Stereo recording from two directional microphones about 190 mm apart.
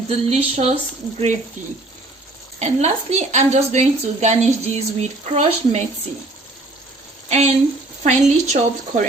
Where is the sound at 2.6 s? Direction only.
35° right (ahead or behind).